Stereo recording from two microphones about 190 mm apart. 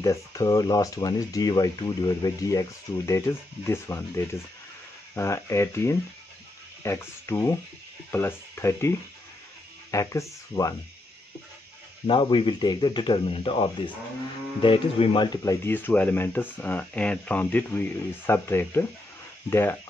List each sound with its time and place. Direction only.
0.0 s speech: 15° left (ahead or behind)
12.1 s speech: 25° left (ahead or behind)